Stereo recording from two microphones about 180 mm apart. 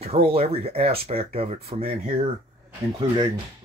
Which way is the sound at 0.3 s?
35° right (ahead or behind).